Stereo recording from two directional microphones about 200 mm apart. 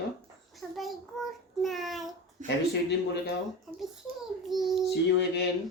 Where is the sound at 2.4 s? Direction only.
60° left (ahead or behind).